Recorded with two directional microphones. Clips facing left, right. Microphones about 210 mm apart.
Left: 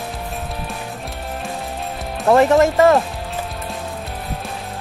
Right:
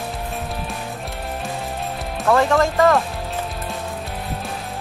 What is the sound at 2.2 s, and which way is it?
Speech, 20° left (ahead or behind).